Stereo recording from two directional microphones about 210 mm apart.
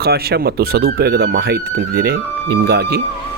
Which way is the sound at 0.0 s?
50° right (ahead or behind).